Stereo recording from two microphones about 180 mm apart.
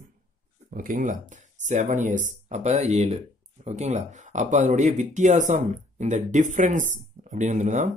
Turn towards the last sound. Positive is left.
turn(degrees=-40)  # may be behind; listen again after turning